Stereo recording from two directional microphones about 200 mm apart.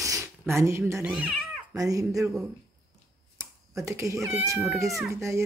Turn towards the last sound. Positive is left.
turn(degrees=-15)  # may be behind; listen again after turning